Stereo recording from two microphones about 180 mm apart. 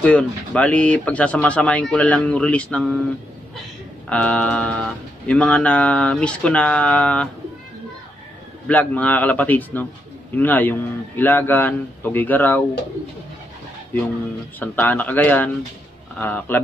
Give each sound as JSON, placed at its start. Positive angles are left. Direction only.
{"t": 0.0, "sound": "speech", "side_deg": 5}
{"t": 4.1, "sound": "speech", "side_deg": 5}
{"t": 8.6, "sound": "speech", "side_deg": 10}
{"t": 14.6, "sound": "speech", "side_deg": 10}